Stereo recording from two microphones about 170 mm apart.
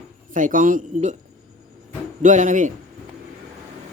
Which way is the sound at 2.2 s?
50° right (ahead or behind).